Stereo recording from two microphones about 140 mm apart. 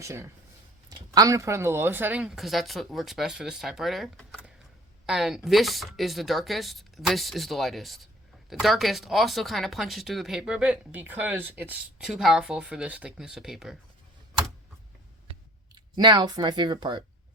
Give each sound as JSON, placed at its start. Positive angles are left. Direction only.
{"t": 0.0, "sound": "speech", "side_deg": -20}
{"t": 15.7, "sound": "speech", "side_deg": -30}